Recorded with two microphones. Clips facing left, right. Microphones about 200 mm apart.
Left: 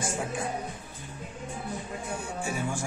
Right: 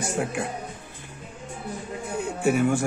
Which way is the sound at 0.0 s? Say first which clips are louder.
Right 4 dB; 65° right (ahead or behind).